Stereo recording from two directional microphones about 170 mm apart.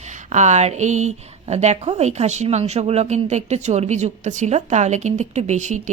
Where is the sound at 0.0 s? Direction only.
45° right (ahead or behind).